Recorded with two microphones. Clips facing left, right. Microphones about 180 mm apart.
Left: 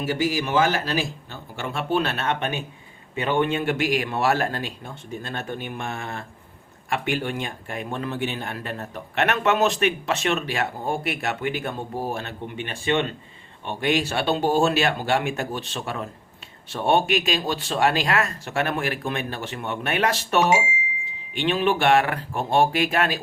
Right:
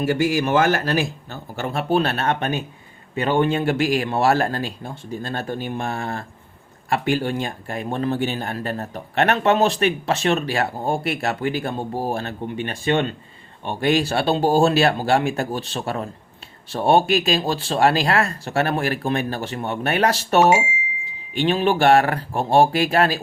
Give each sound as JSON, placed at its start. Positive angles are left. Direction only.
{"t": 0.0, "sound": "a man's voice", "side_deg": -55}